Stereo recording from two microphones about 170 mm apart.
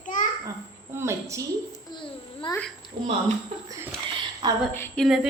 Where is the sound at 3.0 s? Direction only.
30° right (ahead or behind).